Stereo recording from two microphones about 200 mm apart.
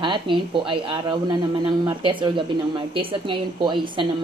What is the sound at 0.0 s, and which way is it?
Speech, 25° right (ahead or behind).